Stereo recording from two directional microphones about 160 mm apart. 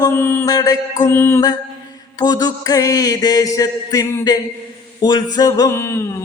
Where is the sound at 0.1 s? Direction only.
15° left (ahead or behind).